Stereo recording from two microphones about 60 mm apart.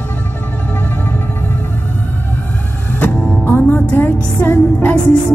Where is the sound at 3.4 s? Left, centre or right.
Left.